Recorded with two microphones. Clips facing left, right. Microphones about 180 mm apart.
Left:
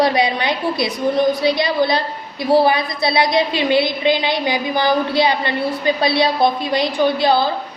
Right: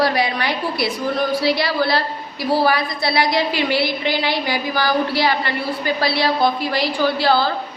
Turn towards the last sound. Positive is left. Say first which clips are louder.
# left 2 dB
turn(degrees=20)  # may be behind; listen again after turning